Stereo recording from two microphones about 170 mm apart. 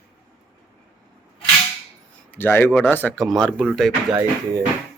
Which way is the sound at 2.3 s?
10° left (ahead or behind).